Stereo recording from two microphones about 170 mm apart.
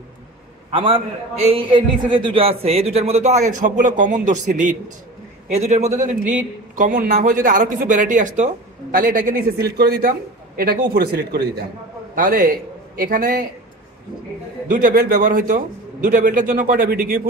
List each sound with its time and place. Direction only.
0.7 s a man's voice: 30° right (ahead or behind); by 11.6 s 70° right (ahead or behind)
12.2 s a man's voice: 55° right (ahead or behind)
14.7 s a man's voice: 55° right (ahead or behind)